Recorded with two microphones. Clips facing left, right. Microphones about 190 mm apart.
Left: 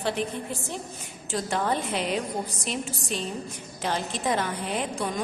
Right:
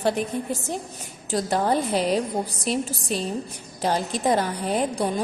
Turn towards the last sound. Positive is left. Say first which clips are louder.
# right 5 dB
turn(degrees=-35)  # may be behind; listen again after turning